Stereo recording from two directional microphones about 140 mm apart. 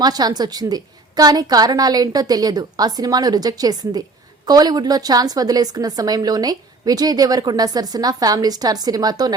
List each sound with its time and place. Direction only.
0.0 s a woman's voice: 30° right (ahead or behind)